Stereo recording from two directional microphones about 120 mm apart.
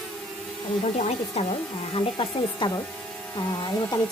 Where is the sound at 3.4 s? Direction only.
35° left (ahead or behind).